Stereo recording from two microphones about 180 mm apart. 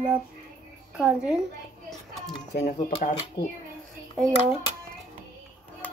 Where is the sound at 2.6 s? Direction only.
50° left (ahead or behind).